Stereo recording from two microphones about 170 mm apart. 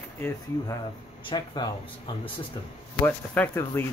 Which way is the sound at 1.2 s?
25° left (ahead or behind).